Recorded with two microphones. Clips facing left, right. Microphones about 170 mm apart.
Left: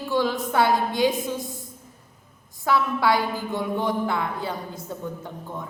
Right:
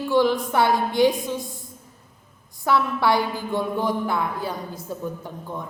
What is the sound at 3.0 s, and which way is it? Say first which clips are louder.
Speech: right 1 dB; 20° right (ahead or behind).